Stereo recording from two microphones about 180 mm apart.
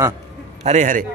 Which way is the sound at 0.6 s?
45° right (ahead or behind).